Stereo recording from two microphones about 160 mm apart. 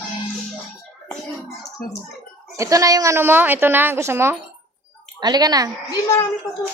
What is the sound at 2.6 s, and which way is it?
A woman's voice, 20° right (ahead or behind).